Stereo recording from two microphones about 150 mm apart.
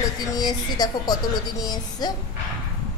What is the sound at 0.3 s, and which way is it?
A woman's voice, 25° left (ahead or behind).